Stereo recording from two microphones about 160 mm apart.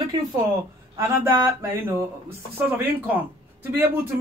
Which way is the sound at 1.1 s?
15° right (ahead or behind).